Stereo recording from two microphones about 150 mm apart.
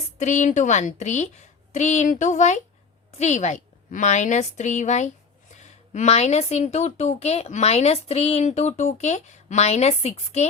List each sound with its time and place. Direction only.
0.2 s a woman's voice: 55° left (ahead or behind)